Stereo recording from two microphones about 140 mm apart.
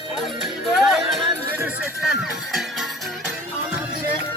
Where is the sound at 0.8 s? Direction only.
Centre (ahead or behind).